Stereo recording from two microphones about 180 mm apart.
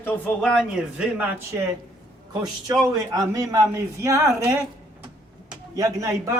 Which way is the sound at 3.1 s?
20° right (ahead or behind).